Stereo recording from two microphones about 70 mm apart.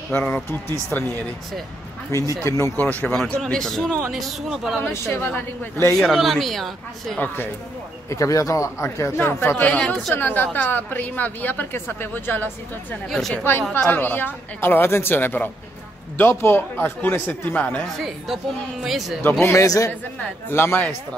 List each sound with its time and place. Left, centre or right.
0.1 s a woman's voice: centre
2.0 s speech: left
2.8 s a woman's voice: left
3.3 s a man's voice: centre
4.1 s a woman's voice: centre
4.8 s speech: left
5.9 s a woman's voice: centre
8.1 s speech: left
9.7 s a woman's voice: centre
13.1 s a man's voice: centre
13.4 s a woman's voice: left
17.9 s a woman's voice: centre
19.5 s a man's voice: left
20.4 s speech: left